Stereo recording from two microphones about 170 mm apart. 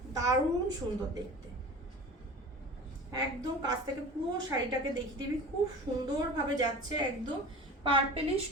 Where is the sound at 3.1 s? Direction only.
20° right (ahead or behind).